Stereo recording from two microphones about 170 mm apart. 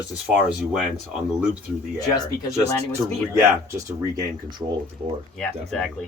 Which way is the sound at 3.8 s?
20° right (ahead or behind).